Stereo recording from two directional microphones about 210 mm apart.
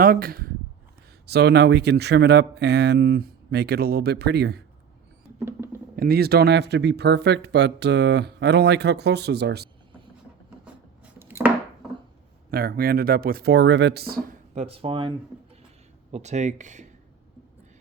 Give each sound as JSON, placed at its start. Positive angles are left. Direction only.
{"t": 0.0, "sound": "speech", "side_deg": -45}
{"t": 5.4, "sound": "a sound", "side_deg": -10}
{"t": 6.0, "sound": "speech", "side_deg": -45}
{"t": 11.0, "sound": "chopping", "side_deg": -10}
{"t": 12.5, "sound": "speech", "side_deg": -45}
{"t": 16.1, "sound": "speech", "side_deg": -35}